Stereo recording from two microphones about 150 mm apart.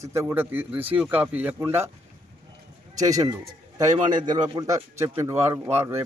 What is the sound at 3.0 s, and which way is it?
A man's voice, 25° right (ahead or behind).